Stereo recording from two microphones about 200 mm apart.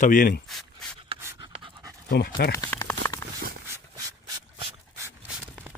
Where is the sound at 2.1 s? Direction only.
50° left (ahead or behind).